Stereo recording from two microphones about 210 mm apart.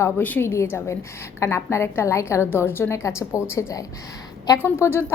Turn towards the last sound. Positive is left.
turn(degrees=10)  # may be behind; listen again after turning